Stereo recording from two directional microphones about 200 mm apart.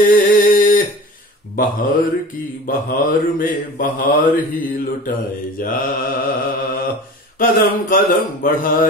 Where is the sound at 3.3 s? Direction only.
45° left (ahead or behind).